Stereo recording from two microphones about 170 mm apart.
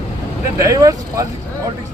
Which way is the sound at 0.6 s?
20° right (ahead or behind).